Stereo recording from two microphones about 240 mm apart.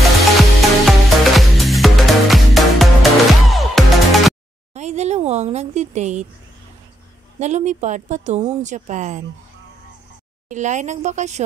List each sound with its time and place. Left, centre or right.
0.4 s music: centre
4.7 s a sound: right
7.3 s a woman's voice: right
10.5 s a woman's voice: right